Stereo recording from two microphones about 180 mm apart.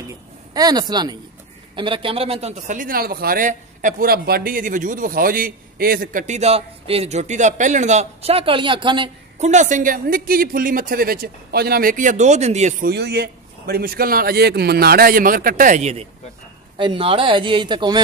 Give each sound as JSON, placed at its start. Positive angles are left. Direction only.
{"t": 0.1, "sound": "a woman's voice", "side_deg": -20}
{"t": 9.4, "sound": "a man's voice", "side_deg": -40}
{"t": 12.8, "sound": "a man's voice", "side_deg": -65}